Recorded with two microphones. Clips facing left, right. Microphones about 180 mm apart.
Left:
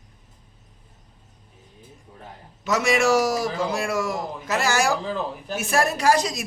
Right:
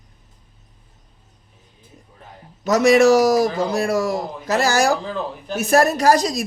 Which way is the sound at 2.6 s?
40° right (ahead or behind).